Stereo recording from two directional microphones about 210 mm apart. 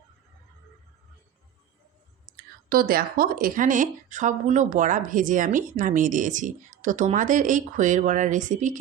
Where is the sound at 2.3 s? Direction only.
45° right (ahead or behind).